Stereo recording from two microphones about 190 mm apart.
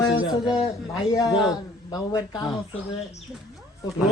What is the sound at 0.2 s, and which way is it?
Speech, 5° right (ahead or behind).